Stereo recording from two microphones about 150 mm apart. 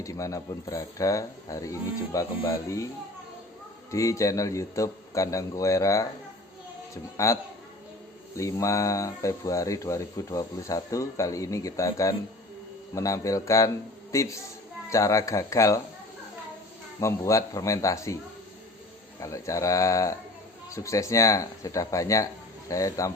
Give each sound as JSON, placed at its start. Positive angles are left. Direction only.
{"t": 0.0, "sound": "speech", "side_deg": 20}
{"t": 3.9, "sound": "speech", "side_deg": 20}
{"t": 8.4, "sound": "speech", "side_deg": 20}
{"t": 17.0, "sound": "speech", "side_deg": 20}
{"t": 19.2, "sound": "speech", "side_deg": 20}